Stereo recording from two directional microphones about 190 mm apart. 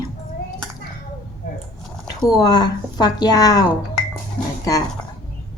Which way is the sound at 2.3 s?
20° left (ahead or behind).